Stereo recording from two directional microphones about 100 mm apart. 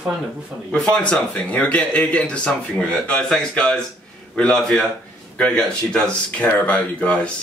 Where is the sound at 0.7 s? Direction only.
10° left (ahead or behind).